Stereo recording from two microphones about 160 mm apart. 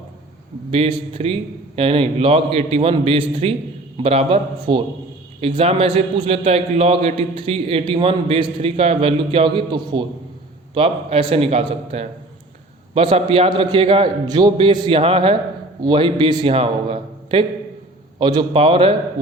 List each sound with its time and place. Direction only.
0.7 s a man's voice: 35° right (ahead or behind)